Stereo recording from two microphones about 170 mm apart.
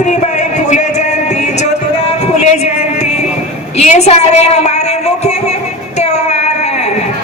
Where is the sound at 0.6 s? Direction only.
45° left (ahead or behind).